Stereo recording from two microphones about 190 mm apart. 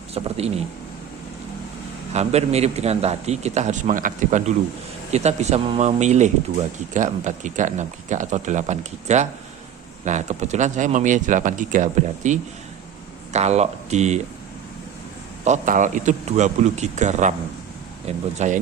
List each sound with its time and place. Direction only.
0.1 s a man's voice: 35° right (ahead or behind)
2.1 s a man's voice: 35° right (ahead or behind)
15.4 s a man's voice: 40° right (ahead or behind)